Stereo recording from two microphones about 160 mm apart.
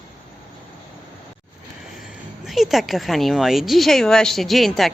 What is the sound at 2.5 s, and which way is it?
Speech, centre (ahead or behind).